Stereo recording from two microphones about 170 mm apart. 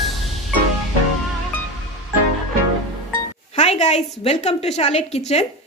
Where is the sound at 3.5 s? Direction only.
40° left (ahead or behind).